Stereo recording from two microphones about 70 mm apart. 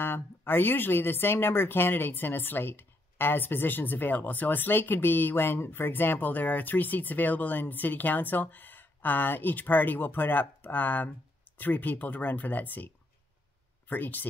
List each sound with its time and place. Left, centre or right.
0.0 s speech: left